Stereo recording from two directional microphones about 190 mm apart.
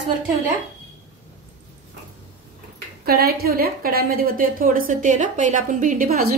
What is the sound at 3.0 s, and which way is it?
A woman's voice, 55° right (ahead or behind).